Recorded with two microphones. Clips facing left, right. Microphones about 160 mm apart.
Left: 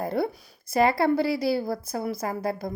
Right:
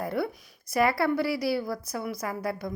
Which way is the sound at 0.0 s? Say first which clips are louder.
Left 3 dB; 30° left (ahead or behind).